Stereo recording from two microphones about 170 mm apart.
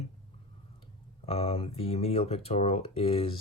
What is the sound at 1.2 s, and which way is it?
Speech, 35° left (ahead or behind).